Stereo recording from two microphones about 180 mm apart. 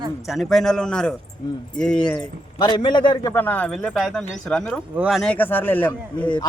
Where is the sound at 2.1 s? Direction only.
25° left (ahead or behind).